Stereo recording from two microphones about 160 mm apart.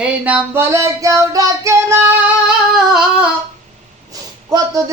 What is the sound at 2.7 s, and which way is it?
Humming, 5° right (ahead or behind).